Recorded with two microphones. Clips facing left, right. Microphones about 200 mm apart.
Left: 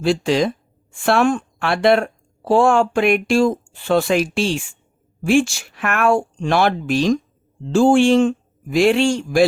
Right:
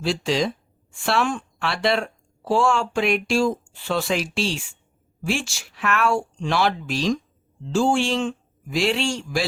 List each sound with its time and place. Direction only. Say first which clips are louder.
0.0 s speech: left 5 dB; 55° left (ahead or behind)